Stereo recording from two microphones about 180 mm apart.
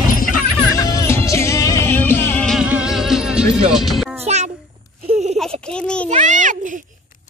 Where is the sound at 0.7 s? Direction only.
20° left (ahead or behind).